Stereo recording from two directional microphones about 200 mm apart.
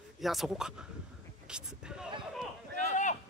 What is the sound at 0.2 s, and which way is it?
Speech, centre (ahead or behind).